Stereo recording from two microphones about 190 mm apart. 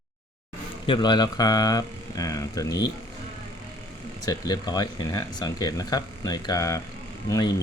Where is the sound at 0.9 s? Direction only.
25° left (ahead or behind).